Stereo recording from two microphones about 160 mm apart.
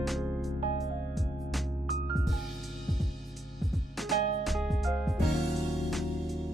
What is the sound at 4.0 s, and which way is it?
Music, centre (ahead or behind).